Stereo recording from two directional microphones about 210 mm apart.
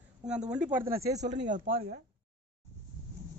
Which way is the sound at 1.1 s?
35° right (ahead or behind).